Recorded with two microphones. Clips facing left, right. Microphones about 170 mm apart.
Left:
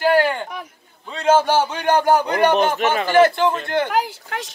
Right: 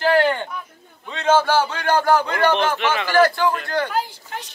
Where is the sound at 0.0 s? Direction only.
10° left (ahead or behind).